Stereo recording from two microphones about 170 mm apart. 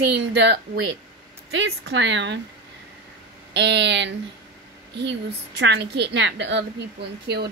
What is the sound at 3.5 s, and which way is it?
Speech, 90° right.